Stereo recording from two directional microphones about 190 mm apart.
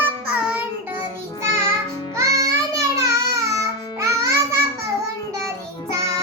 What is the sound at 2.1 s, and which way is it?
Music, 15° right (ahead or behind).